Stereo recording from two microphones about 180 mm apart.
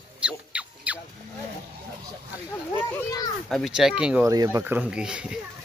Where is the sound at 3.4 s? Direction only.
Centre (ahead or behind).